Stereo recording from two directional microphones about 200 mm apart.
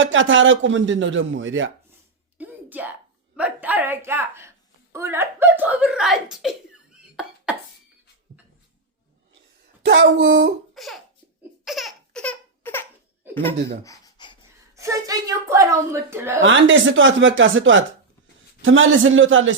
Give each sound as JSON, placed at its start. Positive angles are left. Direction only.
{"t": 0.0, "sound": "speech", "side_deg": -70}
{"t": 2.4, "sound": "a sound", "side_deg": -10}
{"t": 3.3, "sound": "a woman's voice", "side_deg": -5}
{"t": 9.8, "sound": "speech", "side_deg": -60}
{"t": 10.8, "sound": "laughter", "side_deg": 0}
{"t": 13.8, "sound": "a sound", "side_deg": 15}
{"t": 14.8, "sound": "a woman's voice", "side_deg": -15}
{"t": 16.4, "sound": "speech", "side_deg": -70}